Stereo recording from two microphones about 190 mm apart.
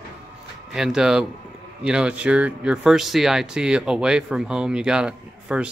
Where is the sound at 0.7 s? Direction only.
Centre (ahead or behind).